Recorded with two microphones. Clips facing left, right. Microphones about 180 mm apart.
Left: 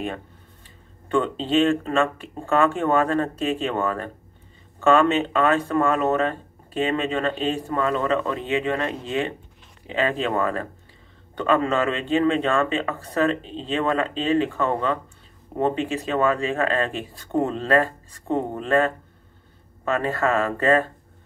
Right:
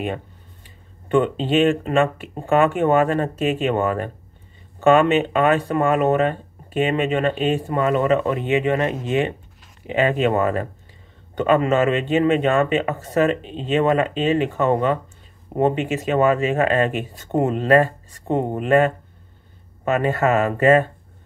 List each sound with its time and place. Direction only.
1.1 s speech: 15° right (ahead or behind)